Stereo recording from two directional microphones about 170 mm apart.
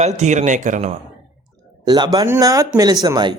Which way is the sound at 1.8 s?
25° right (ahead or behind).